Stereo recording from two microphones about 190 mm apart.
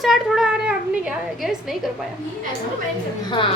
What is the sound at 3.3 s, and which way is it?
Speech, 25° left (ahead or behind).